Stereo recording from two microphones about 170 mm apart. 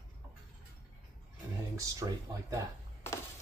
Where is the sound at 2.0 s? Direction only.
15° right (ahead or behind).